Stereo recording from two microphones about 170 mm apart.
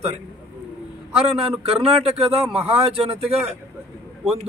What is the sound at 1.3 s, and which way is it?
Speech, 35° right (ahead or behind).